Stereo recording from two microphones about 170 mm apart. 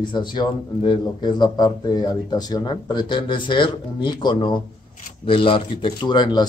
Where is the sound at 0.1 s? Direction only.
25° left (ahead or behind).